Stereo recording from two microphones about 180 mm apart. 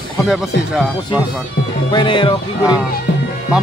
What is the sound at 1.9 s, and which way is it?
Speech, 30° left (ahead or behind).